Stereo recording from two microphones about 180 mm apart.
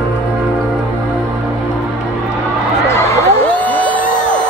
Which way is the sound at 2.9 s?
15° left (ahead or behind).